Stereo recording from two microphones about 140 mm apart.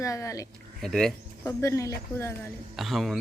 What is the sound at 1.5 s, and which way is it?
Speech, 20° left (ahead or behind).